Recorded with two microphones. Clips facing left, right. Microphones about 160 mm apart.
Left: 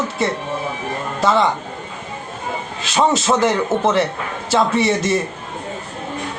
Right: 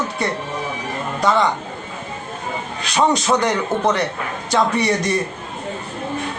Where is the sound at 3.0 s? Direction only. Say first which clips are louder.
Left 1 dB; 5° left (ahead or behind).